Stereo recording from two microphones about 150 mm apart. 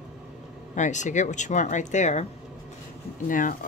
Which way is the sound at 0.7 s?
55° left (ahead or behind).